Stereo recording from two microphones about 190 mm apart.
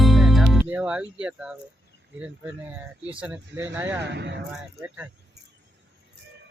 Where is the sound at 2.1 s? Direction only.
5° right (ahead or behind).